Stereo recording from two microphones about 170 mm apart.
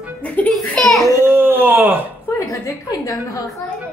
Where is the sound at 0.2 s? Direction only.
10° left (ahead or behind).